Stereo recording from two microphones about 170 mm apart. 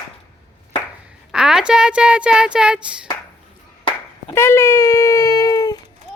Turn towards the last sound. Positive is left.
turn(degrees=20)  # may be behind; listen again after turning